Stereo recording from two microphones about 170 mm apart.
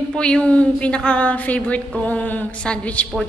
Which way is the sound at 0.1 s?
5° left (ahead or behind).